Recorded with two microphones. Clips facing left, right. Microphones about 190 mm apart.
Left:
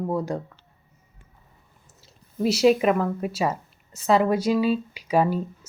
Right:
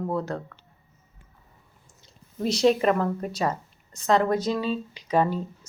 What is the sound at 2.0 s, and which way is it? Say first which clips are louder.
Speech: left 4 dB; 5° left (ahead or behind).